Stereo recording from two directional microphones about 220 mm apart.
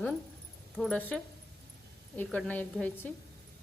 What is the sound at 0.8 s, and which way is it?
A woman's voice, 5° left (ahead or behind).